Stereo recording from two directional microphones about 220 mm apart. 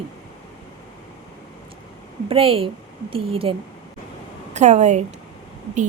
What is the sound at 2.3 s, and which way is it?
A woman's voice, 25° right (ahead or behind).